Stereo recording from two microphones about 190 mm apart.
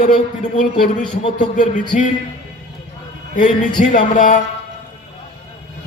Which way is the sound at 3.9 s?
40° left (ahead or behind).